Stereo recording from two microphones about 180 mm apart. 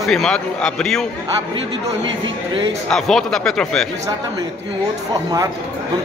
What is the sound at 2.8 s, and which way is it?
A man's voice, 5° left (ahead or behind).